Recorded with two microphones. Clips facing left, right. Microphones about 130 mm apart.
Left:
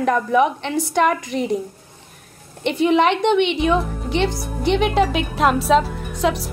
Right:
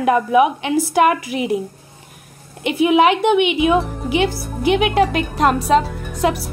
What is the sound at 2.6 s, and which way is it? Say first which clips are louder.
A woman's voice: right 2 dB; 5° right (ahead or behind).